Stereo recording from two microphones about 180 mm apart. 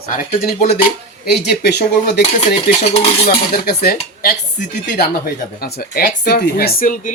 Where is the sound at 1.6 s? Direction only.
65° left (ahead or behind).